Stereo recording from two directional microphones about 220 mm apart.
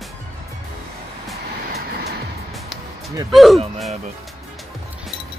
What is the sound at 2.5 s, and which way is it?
Music, centre (ahead or behind).